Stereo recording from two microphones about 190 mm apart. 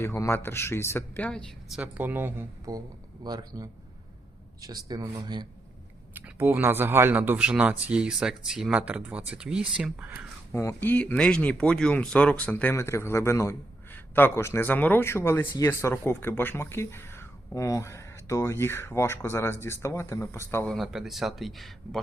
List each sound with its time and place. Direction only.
0.0 s speech: 15° left (ahead or behind); by 5.5 s 20° right (ahead or behind)
6.1 s speech: 10° right (ahead or behind)
10.5 s speech: 15° left (ahead or behind)
20.7 s speech: centre (ahead or behind)